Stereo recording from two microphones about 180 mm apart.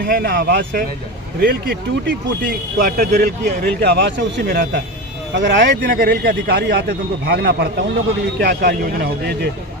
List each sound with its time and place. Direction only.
0.0 s a man's voice: 55° right (ahead or behind)
5.3 s a man's voice: 75° right (ahead or behind); by 9.5 s 60° right (ahead or behind)